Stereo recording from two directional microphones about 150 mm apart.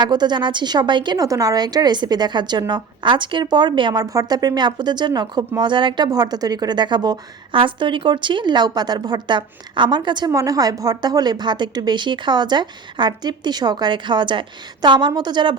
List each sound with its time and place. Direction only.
0.0 s a woman's voice: 30° right (ahead or behind)